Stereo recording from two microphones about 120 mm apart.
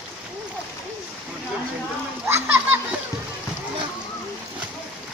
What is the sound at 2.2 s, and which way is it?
Splash, 20° right (ahead or behind).